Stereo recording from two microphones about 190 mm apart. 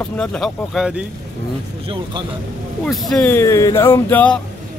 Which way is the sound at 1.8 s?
25° right (ahead or behind).